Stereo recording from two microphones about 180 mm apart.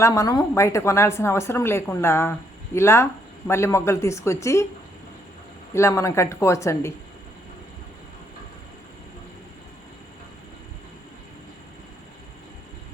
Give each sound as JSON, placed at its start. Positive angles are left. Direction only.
{"t": 0.0, "sound": "speech", "side_deg": 20}
{"t": 5.7, "sound": "speech", "side_deg": 15}